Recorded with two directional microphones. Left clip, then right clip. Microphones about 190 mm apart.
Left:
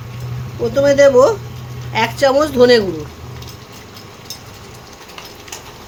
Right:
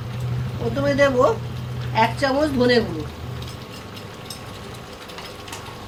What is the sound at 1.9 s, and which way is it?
Speech, 60° left (ahead or behind).